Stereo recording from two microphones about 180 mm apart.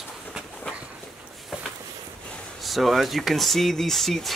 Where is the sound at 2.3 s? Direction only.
Centre (ahead or behind).